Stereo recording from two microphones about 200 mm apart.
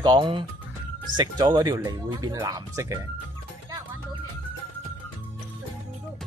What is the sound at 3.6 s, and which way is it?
Music, 15° right (ahead or behind).